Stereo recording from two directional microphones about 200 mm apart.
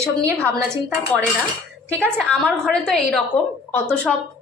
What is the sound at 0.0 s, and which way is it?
Speech, 15° right (ahead or behind).